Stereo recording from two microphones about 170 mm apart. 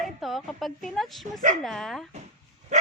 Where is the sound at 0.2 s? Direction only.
Centre (ahead or behind).